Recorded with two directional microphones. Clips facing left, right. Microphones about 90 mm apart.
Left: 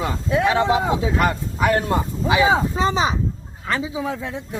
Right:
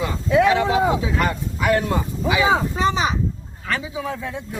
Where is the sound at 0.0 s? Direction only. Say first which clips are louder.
Right 3 dB; 35° left (ahead or behind).